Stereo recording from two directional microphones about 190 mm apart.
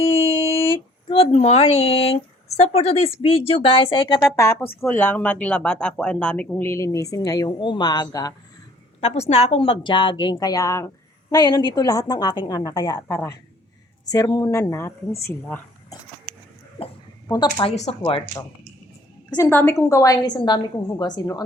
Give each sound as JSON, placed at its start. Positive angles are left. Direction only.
{"t": 0.0, "sound": "a sound", "side_deg": 30}
{"t": 0.7, "sound": "speech", "side_deg": 30}
{"t": 4.2, "sound": "speech", "side_deg": 10}
{"t": 9.0, "sound": "a woman's voice", "side_deg": 35}
{"t": 16.8, "sound": "speech", "side_deg": 20}
{"t": 19.5, "sound": "a woman's voice", "side_deg": 10}